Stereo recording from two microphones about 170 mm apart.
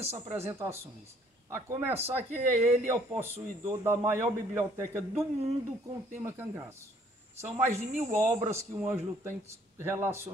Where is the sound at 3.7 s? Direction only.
15° right (ahead or behind).